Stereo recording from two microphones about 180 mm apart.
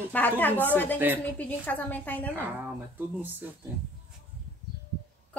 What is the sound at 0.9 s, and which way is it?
Speech, 10° right (ahead or behind).